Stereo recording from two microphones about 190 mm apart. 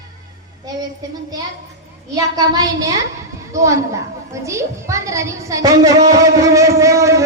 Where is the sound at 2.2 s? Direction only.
20° right (ahead or behind).